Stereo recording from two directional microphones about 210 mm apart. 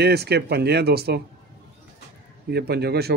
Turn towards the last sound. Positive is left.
turn(degrees=-50)  # may be behind; listen again after turning